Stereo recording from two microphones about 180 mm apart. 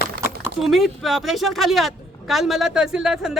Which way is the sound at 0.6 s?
Centre (ahead or behind).